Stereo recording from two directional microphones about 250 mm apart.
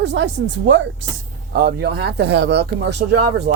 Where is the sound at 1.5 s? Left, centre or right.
Right.